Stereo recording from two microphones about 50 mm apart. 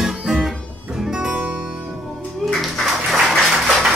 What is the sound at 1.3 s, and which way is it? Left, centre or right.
Music, right.